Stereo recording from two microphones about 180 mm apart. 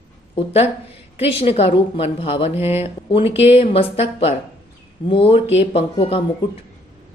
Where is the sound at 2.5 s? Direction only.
10° right (ahead or behind).